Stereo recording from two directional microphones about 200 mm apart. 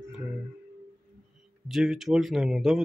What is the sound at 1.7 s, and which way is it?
Speech, centre (ahead or behind).